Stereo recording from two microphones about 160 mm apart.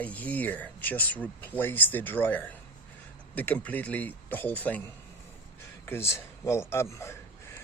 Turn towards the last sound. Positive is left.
turn(degrees=15)  # may be behind; listen again after turning